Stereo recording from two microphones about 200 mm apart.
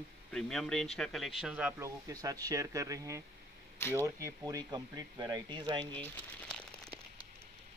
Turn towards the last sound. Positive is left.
turn(degrees=5)  # may be behind; listen again after turning